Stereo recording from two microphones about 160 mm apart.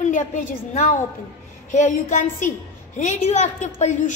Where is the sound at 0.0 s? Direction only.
50° left (ahead or behind).